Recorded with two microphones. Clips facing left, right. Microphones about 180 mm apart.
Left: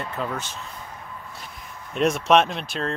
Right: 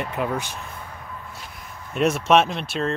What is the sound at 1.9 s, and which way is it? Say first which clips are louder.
Speech: right 1 dB; 5° right (ahead or behind).